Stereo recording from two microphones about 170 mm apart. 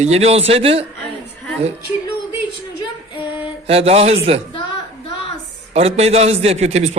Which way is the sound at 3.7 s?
35° right (ahead or behind).